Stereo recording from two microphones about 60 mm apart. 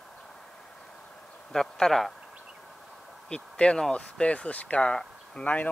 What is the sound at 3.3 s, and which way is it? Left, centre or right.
Speech, centre.